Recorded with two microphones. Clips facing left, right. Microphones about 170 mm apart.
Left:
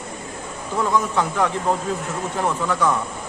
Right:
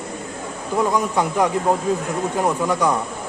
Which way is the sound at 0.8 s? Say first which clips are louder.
Right 1 dB; 15° right (ahead or behind).